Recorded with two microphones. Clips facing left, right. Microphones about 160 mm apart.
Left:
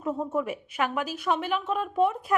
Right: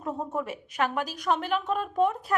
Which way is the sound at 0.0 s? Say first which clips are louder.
Left 3 dB; 10° left (ahead or behind).